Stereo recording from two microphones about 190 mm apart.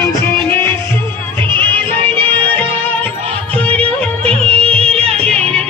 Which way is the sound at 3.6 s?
30° right (ahead or behind).